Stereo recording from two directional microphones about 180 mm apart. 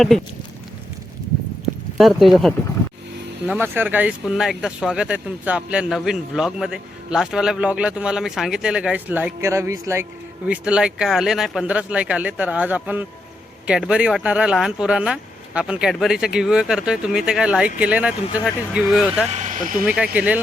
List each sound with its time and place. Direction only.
2.0 s speech: centre (ahead or behind)
19.3 s speech: 45° right (ahead or behind)
20.0 s speech: 5° right (ahead or behind)